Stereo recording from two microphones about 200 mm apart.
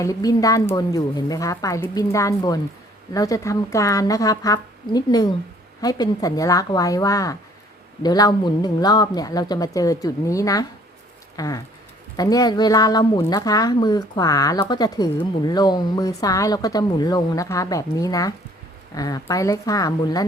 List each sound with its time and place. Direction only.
0.0 s a woman's voice: 15° left (ahead or behind)